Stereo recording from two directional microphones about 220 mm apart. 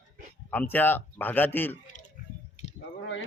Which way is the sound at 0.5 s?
10° left (ahead or behind).